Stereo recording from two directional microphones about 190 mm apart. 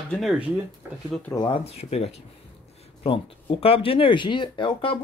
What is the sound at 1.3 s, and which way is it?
Speech, 25° left (ahead or behind).